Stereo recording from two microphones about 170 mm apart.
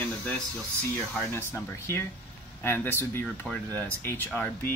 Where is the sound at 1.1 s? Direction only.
15° left (ahead or behind).